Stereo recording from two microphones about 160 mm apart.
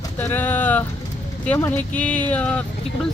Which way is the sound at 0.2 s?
10° left (ahead or behind).